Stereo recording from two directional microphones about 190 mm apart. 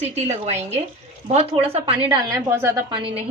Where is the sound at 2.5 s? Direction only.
15° right (ahead or behind).